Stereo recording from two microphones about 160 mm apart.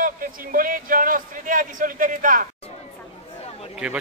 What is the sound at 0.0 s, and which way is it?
A man's voice, 60° right (ahead or behind).